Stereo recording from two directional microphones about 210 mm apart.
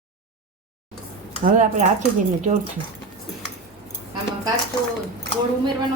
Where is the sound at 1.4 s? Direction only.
40° right (ahead or behind).